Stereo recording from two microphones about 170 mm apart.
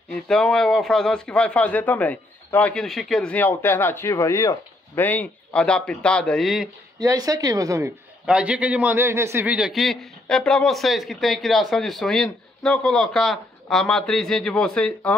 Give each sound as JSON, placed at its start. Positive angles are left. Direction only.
{"t": 0.1, "sound": "a man's voice", "side_deg": 5}
{"t": 7.0, "sound": "speech", "side_deg": -20}
{"t": 8.3, "sound": "a man's voice", "side_deg": -5}